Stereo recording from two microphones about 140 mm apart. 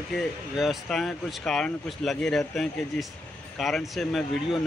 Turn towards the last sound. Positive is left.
turn(degrees=0)  # may be behind; listen again after turning